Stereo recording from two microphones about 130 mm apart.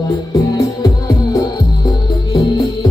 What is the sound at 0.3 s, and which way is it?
Music, 25° left (ahead or behind).